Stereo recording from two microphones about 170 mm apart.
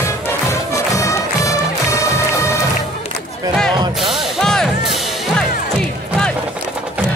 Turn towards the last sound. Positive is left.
turn(degrees=5)  # may be behind; listen again after turning